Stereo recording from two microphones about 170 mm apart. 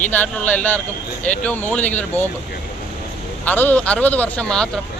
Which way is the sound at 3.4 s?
10° left (ahead or behind).